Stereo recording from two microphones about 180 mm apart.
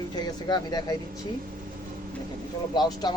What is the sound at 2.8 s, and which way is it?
Speech, 20° left (ahead or behind).